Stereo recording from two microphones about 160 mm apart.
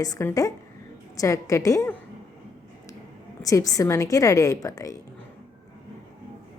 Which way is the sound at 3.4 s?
20° left (ahead or behind).